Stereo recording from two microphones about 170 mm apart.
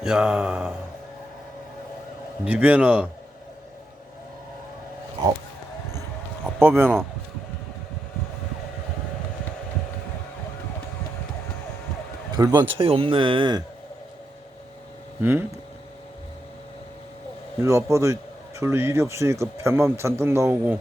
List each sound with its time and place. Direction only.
0.0 s a sound: 5° right (ahead or behind)
2.4 s speech: 10° right (ahead or behind)
6.6 s speech: 10° right (ahead or behind)
12.3 s speech: 25° right (ahead or behind)
15.2 s speech: 15° right (ahead or behind)
17.6 s speech: 15° right (ahead or behind)